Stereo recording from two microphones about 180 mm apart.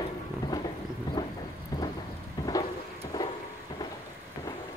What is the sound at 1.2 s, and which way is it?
Thunder, 20° left (ahead or behind).